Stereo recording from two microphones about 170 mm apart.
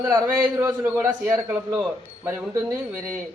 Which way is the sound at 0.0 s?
20° right (ahead or behind).